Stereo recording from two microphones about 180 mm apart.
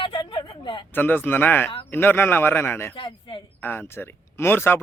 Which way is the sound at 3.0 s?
30° left (ahead or behind).